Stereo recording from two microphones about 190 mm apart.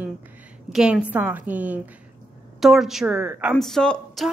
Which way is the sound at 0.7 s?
5° right (ahead or behind).